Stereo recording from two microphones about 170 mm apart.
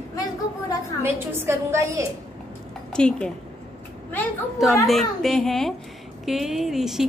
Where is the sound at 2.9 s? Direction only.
5° left (ahead or behind).